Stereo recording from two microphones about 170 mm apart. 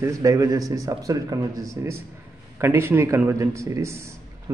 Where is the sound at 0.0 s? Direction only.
20° right (ahead or behind).